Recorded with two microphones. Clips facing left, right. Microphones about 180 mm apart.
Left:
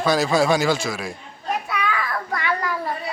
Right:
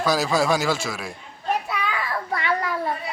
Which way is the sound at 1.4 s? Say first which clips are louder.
Left 1 dB; 25° right (ahead or behind).